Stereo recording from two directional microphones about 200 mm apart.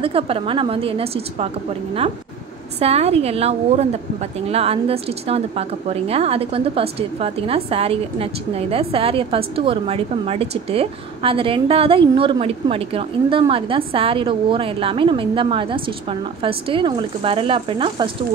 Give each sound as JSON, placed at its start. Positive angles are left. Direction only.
{"t": 0.0, "sound": "a woman's voice", "side_deg": -25}
{"t": 2.8, "sound": "a woman's voice", "side_deg": -30}